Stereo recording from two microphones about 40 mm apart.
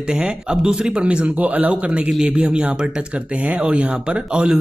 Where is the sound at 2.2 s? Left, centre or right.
Right.